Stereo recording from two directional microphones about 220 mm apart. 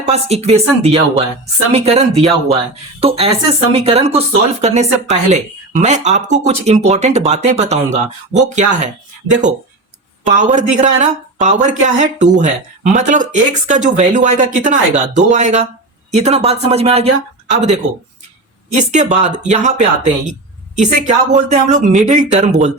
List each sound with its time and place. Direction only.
0.0 s speech: 30° right (ahead or behind)
21.1 s speech: 35° right (ahead or behind)